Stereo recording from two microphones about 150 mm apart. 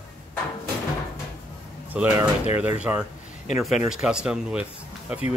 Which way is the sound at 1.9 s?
10° right (ahead or behind).